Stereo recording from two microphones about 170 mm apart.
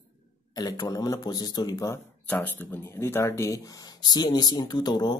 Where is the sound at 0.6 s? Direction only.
20° left (ahead or behind).